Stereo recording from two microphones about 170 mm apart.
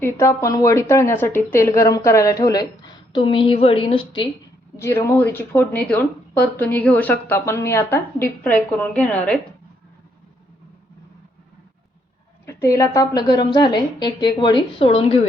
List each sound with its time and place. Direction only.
0.0 s a woman's voice: 15° left (ahead or behind)
4.8 s speech: 15° left (ahead or behind)
12.5 s a woman's voice: 15° left (ahead or behind); by 15.2 s 35° left (ahead or behind)